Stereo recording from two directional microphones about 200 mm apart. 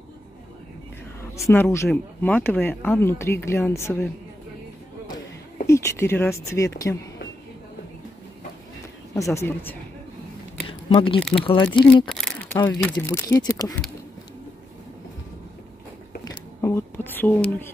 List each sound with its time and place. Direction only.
1.4 s speech: 10° left (ahead or behind)
5.7 s speech: 15° left (ahead or behind)
9.1 s speech: 15° left (ahead or behind)
10.7 s a sound: 25° left (ahead or behind)
11.4 s speech: 25° left (ahead or behind)
11.9 s speech: 5° left (ahead or behind)
16.3 s a sound: 15° left (ahead or behind)